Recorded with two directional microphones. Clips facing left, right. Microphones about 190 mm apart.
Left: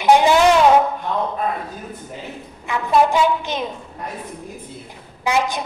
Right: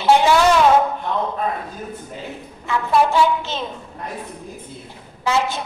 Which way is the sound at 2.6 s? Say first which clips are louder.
Left 1 dB; 15° left (ahead or behind).